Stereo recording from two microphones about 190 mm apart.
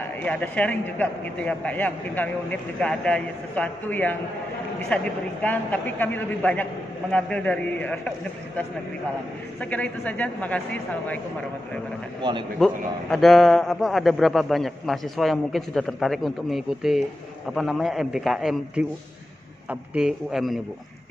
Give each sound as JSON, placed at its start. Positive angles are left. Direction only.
{"t": 0.2, "sound": "a man's voice", "side_deg": 10}
{"t": 9.6, "sound": "a man's voice", "side_deg": 10}
{"t": 12.2, "sound": "a man's voice", "side_deg": -25}
{"t": 12.5, "sound": "a man's voice", "side_deg": 0}